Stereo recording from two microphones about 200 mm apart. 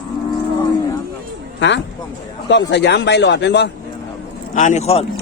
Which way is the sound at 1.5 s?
60° left (ahead or behind).